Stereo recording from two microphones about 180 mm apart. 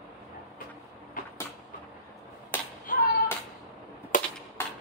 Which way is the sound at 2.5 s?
10° left (ahead or behind).